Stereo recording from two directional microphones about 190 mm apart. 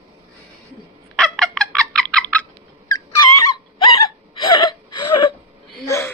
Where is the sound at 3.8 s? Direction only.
25° left (ahead or behind).